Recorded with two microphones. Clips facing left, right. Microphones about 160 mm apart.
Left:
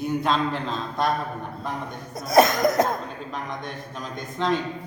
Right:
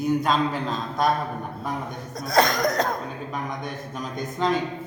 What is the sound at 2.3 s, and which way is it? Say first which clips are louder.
Cough: left 3 dB; 20° left (ahead or behind).